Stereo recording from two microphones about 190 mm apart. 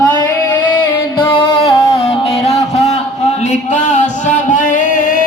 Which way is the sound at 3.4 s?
40° left (ahead or behind).